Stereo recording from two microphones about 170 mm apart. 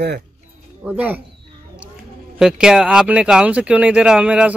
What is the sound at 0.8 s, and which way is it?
Speech, 10° right (ahead or behind).